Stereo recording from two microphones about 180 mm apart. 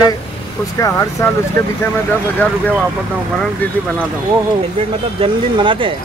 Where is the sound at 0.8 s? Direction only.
15° left (ahead or behind).